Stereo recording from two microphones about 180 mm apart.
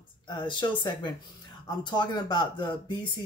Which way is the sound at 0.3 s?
25° left (ahead or behind).